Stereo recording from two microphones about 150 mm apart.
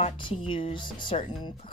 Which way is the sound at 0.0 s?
35° left (ahead or behind).